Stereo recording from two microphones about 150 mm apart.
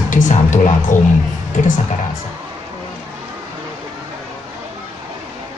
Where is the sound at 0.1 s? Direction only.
55° left (ahead or behind).